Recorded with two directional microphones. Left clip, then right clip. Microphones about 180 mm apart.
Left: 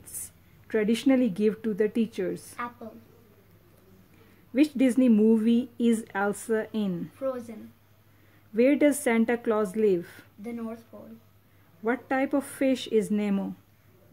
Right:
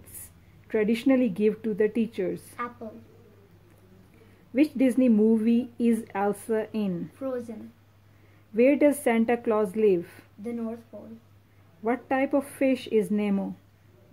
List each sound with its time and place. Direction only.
0.7 s speech: 20° left (ahead or behind)
4.6 s speech: 20° left (ahead or behind)
7.2 s a woman's voice: centre (ahead or behind)
8.5 s speech: 15° left (ahead or behind)
10.4 s a woman's voice: 5° left (ahead or behind)
11.8 s speech: 15° left (ahead or behind)